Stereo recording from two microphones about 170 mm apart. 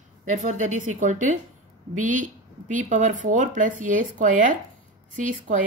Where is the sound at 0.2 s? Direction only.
45° right (ahead or behind).